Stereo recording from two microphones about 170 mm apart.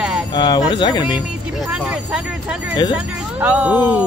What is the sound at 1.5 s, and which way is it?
Speech, 5° right (ahead or behind).